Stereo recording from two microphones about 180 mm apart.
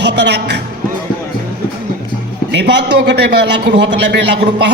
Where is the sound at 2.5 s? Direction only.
70° right (ahead or behind).